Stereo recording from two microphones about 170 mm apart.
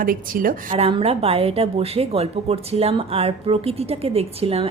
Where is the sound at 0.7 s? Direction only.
35° right (ahead or behind).